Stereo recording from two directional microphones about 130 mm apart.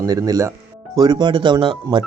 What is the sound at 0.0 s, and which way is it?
Speech, 30° right (ahead or behind).